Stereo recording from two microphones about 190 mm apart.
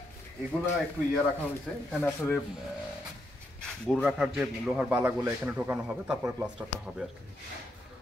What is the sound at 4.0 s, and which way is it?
A man's voice, 5° right (ahead or behind).